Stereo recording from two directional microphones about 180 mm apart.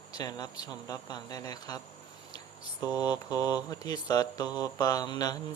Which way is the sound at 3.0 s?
20° left (ahead or behind).